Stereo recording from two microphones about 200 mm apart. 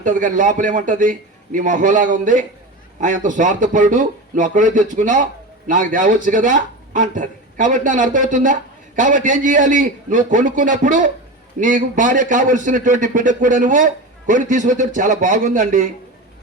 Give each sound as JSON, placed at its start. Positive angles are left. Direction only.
{"t": 0.0, "sound": "a man's voice", "side_deg": -40}